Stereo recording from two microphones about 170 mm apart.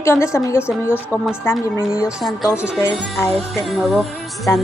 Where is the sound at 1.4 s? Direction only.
15° left (ahead or behind).